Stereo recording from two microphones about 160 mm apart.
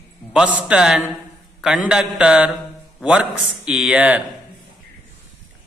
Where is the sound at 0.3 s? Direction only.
10° right (ahead or behind).